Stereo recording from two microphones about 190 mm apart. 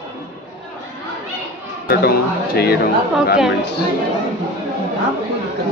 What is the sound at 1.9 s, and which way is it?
Speech, 55° left (ahead or behind).